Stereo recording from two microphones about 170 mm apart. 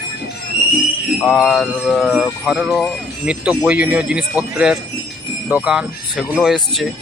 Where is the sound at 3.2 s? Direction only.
5° right (ahead or behind).